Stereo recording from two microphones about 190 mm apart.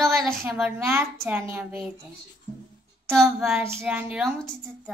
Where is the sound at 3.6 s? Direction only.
10° right (ahead or behind).